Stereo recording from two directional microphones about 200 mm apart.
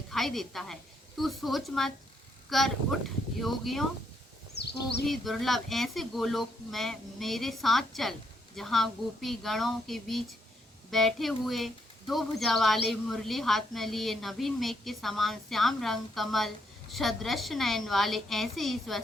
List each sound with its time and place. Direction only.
0.1 s speech: centre (ahead or behind)
4.5 s a sound: 55° left (ahead or behind)
5.0 s speech: centre (ahead or behind)